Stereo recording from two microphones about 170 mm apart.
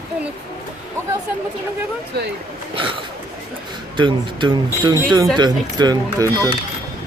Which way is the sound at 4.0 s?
30° right (ahead or behind).